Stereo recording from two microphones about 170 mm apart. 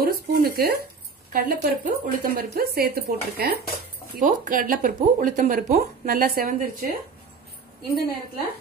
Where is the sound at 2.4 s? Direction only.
65° right (ahead or behind).